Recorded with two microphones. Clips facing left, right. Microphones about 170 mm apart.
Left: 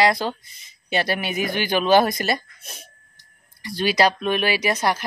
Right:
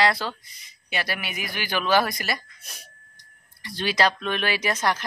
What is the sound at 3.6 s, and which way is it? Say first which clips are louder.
Speech: left 4 dB; 10° left (ahead or behind).